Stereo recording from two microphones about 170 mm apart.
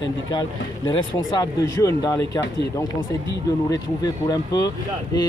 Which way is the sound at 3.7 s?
20° left (ahead or behind).